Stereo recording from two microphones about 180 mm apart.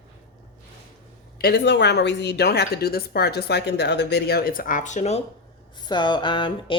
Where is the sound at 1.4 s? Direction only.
70° left (ahead or behind); by 5.2 s 40° left (ahead or behind).